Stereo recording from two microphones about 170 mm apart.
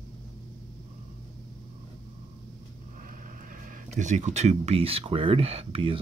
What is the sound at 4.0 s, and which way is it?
Speech, 45° right (ahead or behind).